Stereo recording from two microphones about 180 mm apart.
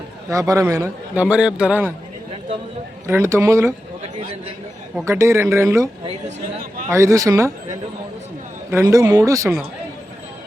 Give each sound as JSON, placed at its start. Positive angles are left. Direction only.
{"t": 0.3, "sound": "a man's voice", "side_deg": -20}
{"t": 3.1, "sound": "a man's voice", "side_deg": -15}
{"t": 5.0, "sound": "a man's voice", "side_deg": -15}
{"t": 6.2, "sound": "a sound", "side_deg": -50}
{"t": 6.9, "sound": "a man's voice", "side_deg": -15}